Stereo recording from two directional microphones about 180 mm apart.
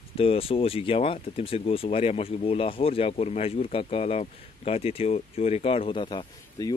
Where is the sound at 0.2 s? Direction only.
30° left (ahead or behind).